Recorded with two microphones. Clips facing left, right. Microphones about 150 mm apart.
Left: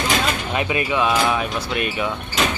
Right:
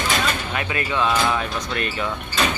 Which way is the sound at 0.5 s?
20° left (ahead or behind).